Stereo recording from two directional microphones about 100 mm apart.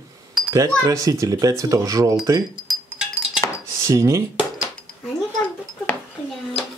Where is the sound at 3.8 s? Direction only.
30° right (ahead or behind).